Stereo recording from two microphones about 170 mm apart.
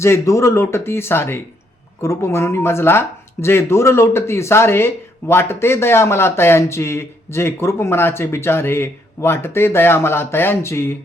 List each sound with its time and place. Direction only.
0.0 s speech: 15° left (ahead or behind)